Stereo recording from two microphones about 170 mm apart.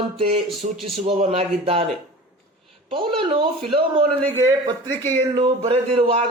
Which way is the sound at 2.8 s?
30° right (ahead or behind).